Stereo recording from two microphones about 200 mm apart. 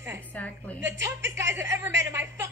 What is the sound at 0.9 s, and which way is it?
A woman's voice, 15° right (ahead or behind).